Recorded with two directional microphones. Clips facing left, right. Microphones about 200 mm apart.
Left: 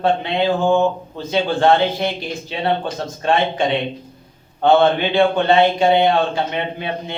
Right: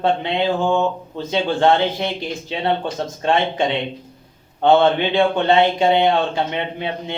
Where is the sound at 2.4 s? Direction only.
20° right (ahead or behind).